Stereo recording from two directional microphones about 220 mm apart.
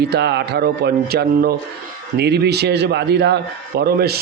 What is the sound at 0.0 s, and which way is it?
A man's voice, 50° right (ahead or behind).